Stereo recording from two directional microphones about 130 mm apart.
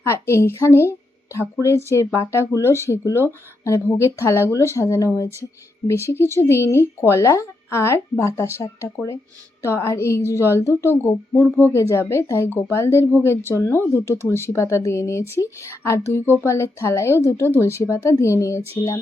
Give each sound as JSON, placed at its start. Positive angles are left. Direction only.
{"t": 0.0, "sound": "a woman's voice", "side_deg": 20}